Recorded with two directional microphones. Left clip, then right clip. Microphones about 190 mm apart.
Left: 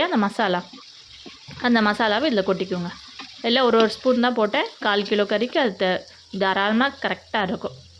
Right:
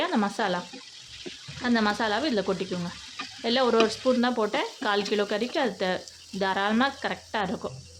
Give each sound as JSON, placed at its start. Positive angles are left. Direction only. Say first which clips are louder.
{"t": 0.0, "sound": "speech", "louder": "left 5 dB", "side_deg": 20}
{"t": 1.6, "sound": "frying", "louder": "left 6 dB", "side_deg": 20}
{"t": 6.4, "sound": "speech", "louder": "left 5 dB", "side_deg": 20}